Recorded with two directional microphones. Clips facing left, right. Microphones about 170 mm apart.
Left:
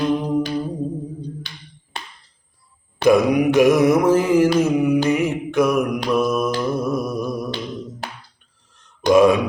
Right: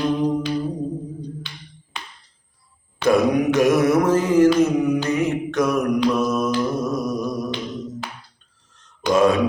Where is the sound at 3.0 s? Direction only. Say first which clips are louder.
Left 2 dB; 10° left (ahead or behind).